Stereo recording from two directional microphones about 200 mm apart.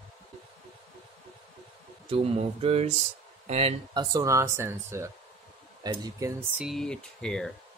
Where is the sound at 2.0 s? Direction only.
30° right (ahead or behind).